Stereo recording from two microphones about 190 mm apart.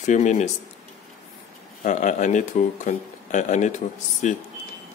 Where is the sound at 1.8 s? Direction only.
40° left (ahead or behind).